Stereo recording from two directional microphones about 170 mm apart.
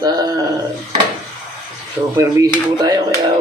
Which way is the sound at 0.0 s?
25° right (ahead or behind).